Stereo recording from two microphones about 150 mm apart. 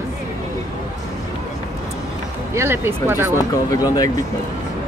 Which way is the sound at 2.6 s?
15° right (ahead or behind).